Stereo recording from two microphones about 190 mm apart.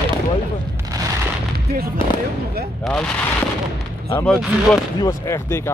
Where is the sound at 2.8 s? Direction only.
5° left (ahead or behind).